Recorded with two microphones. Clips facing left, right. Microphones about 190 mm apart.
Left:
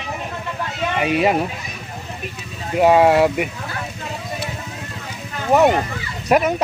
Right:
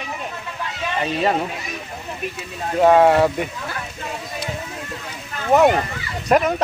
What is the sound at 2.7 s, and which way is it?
Speech, 10° left (ahead or behind).